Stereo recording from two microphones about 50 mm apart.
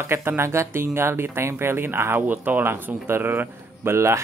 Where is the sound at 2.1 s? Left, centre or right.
Right.